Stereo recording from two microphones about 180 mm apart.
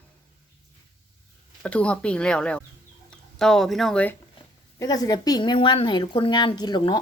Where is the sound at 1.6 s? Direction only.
5° left (ahead or behind).